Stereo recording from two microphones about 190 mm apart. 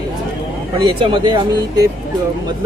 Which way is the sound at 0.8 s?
25° right (ahead or behind).